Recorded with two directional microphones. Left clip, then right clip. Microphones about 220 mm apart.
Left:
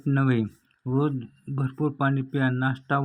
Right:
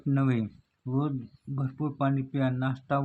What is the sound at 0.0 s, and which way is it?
Speech, 15° left (ahead or behind).